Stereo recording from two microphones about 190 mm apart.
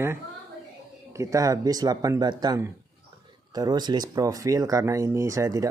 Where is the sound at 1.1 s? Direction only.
15° right (ahead or behind).